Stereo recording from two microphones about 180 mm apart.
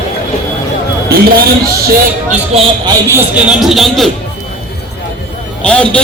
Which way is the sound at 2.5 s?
35° right (ahead or behind).